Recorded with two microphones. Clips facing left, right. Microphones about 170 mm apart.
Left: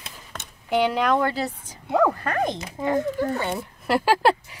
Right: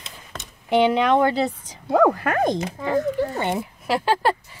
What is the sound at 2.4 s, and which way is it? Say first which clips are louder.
Speech: right 4 dB; 40° right (ahead or behind).